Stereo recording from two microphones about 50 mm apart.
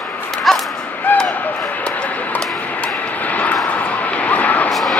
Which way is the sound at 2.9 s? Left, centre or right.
Left.